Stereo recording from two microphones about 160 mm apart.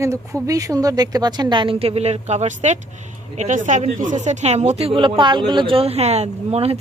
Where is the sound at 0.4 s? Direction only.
20° right (ahead or behind).